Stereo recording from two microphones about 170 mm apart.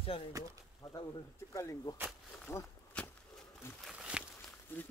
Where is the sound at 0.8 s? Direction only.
20° left (ahead or behind).